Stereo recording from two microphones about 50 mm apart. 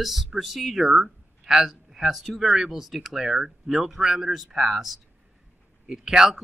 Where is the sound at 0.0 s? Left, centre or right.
Centre.